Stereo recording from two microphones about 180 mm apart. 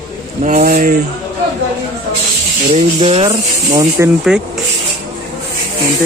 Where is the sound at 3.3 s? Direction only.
20° right (ahead or behind).